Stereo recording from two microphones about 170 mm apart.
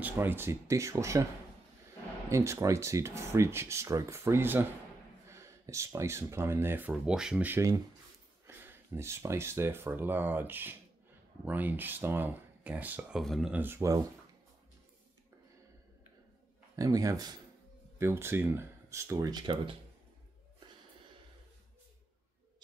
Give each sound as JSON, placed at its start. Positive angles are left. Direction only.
{"t": 0.0, "sound": "speech", "side_deg": -10}
{"t": 2.2, "sound": "speech", "side_deg": -15}
{"t": 16.7, "sound": "speech", "side_deg": -20}